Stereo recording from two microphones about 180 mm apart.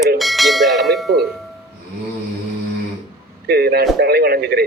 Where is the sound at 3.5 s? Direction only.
60° right (ahead or behind).